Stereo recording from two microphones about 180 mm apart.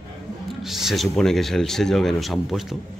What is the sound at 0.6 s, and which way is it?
Speech, centre (ahead or behind).